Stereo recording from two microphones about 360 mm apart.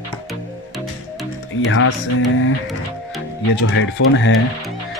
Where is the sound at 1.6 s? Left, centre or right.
Left.